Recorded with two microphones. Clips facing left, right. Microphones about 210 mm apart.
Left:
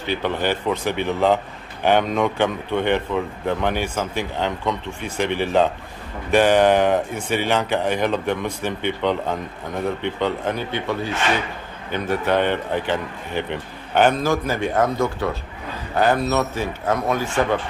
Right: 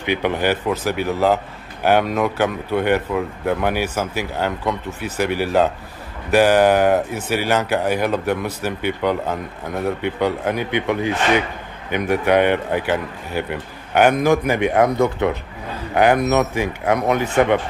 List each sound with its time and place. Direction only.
0.0 s a man's voice: 15° right (ahead or behind)